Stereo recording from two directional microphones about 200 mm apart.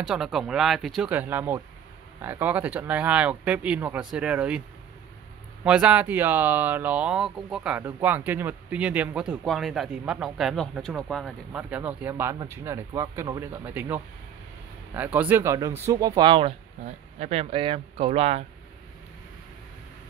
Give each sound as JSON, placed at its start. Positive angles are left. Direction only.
{"t": 0.0, "sound": "speech", "side_deg": 0}